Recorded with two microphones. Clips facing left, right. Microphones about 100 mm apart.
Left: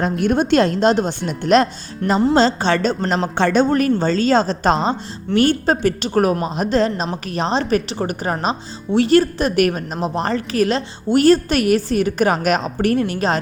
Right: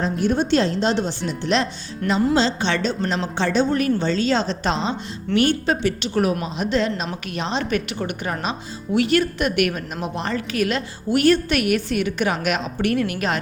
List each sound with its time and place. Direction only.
0.0 s speech: 60° left (ahead or behind); by 13.4 s 30° left (ahead or behind)